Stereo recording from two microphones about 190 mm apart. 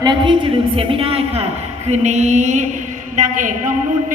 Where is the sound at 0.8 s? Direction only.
30° right (ahead or behind).